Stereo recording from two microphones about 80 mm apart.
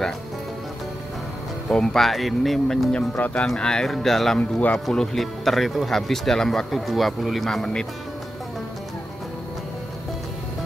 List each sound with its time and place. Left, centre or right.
1.7 s speech: centre
2.9 s speech: centre
4.4 s speech: centre
4.7 s speech: centre